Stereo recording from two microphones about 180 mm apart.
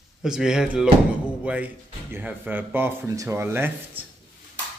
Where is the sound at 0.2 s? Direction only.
5° right (ahead or behind).